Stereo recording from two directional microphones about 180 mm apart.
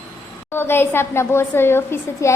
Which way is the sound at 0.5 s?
15° left (ahead or behind).